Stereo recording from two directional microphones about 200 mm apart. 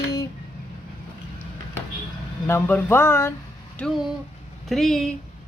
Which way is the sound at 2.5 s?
10° left (ahead or behind).